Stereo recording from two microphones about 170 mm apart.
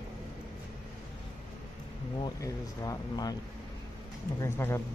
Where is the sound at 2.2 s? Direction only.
20° left (ahead or behind).